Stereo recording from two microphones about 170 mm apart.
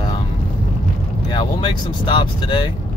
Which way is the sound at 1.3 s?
30° left (ahead or behind).